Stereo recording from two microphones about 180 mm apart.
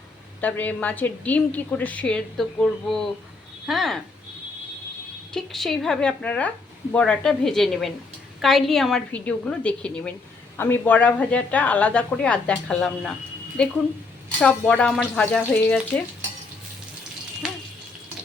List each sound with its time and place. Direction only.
0.4 s a woman's voice: 10° left (ahead or behind)
5.3 s a woman's voice: centre (ahead or behind)